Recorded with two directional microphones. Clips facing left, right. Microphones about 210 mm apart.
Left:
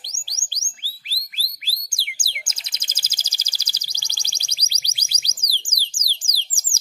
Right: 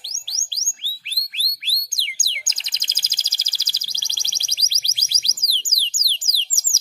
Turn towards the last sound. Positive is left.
turn(degrees=15)  # may be behind; listen again after turning